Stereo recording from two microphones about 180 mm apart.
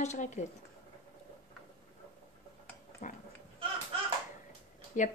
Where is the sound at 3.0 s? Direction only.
40° left (ahead or behind).